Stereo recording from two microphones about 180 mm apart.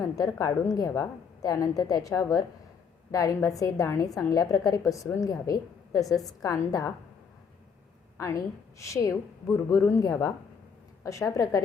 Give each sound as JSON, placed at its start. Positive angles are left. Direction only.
{"t": 0.0, "sound": "a woman's voice", "side_deg": 15}
{"t": 8.2, "sound": "a woman's voice", "side_deg": 15}